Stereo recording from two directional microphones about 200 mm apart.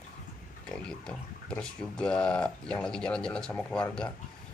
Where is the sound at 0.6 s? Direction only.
5° left (ahead or behind).